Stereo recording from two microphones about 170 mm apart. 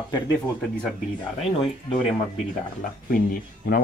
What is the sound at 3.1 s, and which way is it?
Speech, 55° left (ahead or behind).